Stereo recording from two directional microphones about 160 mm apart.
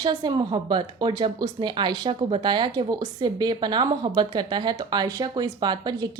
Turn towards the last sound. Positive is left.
turn(degrees=-25)  # may be behind; listen again after turning